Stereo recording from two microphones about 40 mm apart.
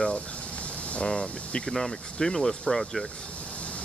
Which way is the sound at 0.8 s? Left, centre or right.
Left.